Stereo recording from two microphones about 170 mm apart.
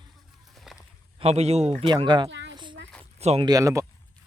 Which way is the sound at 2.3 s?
90° right.